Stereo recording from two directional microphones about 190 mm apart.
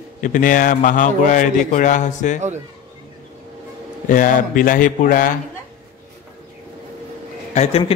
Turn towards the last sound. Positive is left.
turn(degrees=35)  # may be behind; listen again after turning